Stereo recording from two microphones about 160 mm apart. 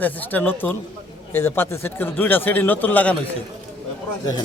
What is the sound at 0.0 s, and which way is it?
Speech, 10° left (ahead or behind).